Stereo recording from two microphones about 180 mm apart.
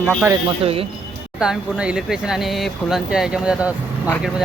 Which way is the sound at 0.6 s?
30° right (ahead or behind).